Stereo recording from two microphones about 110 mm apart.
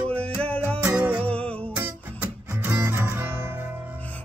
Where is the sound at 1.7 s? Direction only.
15° right (ahead or behind).